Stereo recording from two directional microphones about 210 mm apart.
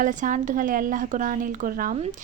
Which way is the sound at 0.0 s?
35° right (ahead or behind).